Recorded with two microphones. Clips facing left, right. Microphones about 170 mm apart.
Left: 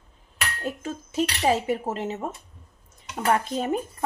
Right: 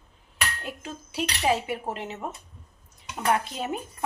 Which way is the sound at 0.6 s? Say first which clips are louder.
Left 6 dB; 45° left (ahead or behind).